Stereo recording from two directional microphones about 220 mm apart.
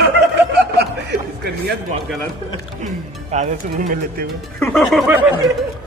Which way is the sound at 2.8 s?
35° right (ahead or behind).